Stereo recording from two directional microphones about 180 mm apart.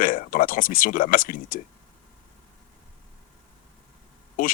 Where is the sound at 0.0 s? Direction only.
50° left (ahead or behind).